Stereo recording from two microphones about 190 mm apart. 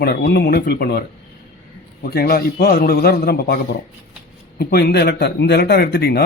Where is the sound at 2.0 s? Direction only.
55° left (ahead or behind).